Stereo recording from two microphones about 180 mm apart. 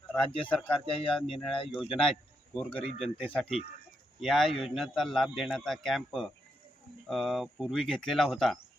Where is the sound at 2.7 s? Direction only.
35° left (ahead or behind).